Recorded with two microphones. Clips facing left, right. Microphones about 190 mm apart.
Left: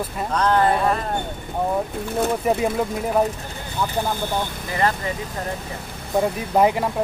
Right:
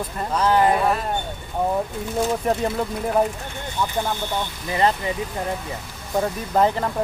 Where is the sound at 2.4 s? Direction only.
10° left (ahead or behind).